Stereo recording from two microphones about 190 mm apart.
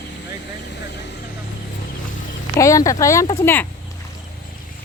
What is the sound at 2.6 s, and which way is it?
Speech, 15° left (ahead or behind).